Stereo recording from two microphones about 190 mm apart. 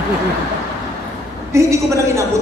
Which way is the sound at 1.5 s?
15° right (ahead or behind).